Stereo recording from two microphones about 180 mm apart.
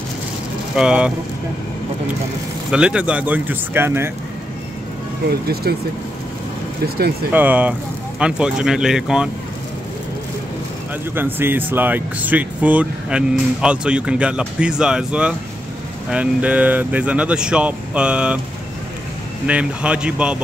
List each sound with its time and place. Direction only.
0.7 s speech: 5° right (ahead or behind)
2.7 s speech: 5° right (ahead or behind)
5.3 s speech: 60° right (ahead or behind)
7.3 s speech: 10° right (ahead or behind)
11.1 s speech: 10° right (ahead or behind)
19.4 s speech: 5° right (ahead or behind)